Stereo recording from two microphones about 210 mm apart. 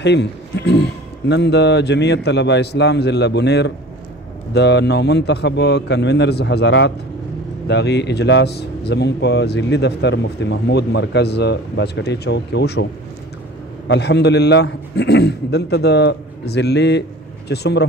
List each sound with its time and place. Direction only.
0.0 s a man's voice: 55° left (ahead or behind)
13.8 s speech: 55° left (ahead or behind)